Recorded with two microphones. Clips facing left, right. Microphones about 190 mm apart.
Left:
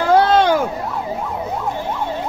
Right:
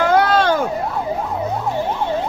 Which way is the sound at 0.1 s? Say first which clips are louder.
Left 6 dB; 25° left (ahead or behind).